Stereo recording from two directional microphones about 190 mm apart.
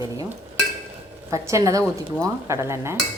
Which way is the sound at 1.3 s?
15° right (ahead or behind).